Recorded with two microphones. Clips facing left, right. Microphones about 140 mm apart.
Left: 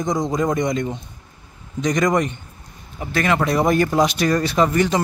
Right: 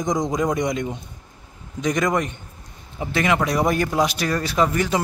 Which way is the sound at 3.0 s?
15° right (ahead or behind).